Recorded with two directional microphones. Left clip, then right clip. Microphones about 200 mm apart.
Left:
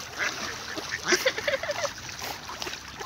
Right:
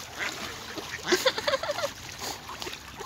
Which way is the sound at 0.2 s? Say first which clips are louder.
Left 3 dB; centre (ahead or behind).